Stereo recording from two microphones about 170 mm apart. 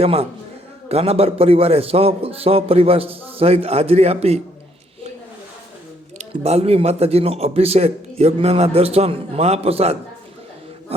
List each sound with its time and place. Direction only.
0.0 s speech: 35° right (ahead or behind)
6.1 s speech: 40° right (ahead or behind)